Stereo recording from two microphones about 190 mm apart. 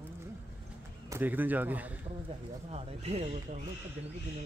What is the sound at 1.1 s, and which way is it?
Speech, 10° right (ahead or behind).